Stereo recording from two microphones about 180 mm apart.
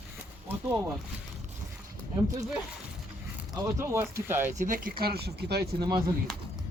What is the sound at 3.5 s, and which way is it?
Speech, 15° right (ahead or behind).